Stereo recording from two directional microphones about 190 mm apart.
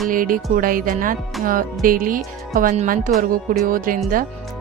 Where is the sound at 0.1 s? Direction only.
45° right (ahead or behind).